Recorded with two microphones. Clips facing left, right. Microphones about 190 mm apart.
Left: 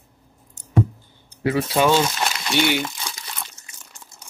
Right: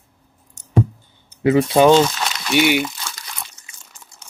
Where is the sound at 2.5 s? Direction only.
15° right (ahead or behind).